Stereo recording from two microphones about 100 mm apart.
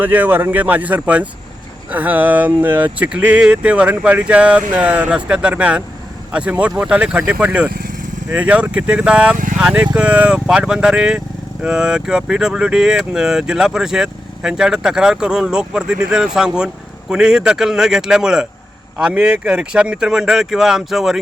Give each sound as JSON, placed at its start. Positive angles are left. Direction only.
{"t": 0.0, "sound": "speech", "side_deg": -20}